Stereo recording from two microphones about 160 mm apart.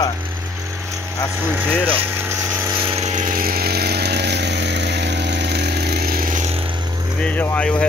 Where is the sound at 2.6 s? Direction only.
30° right (ahead or behind); by 6.5 s 55° right (ahead or behind).